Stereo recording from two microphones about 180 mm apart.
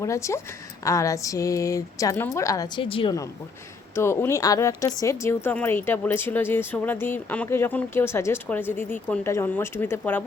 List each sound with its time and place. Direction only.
0.0 s a woman's voice: 15° left (ahead or behind)
3.9 s a woman's voice: 15° left (ahead or behind)